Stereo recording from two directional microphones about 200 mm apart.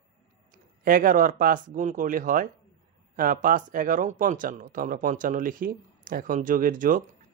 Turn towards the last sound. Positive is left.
turn(degrees=-40)  # may be behind; listen again after turning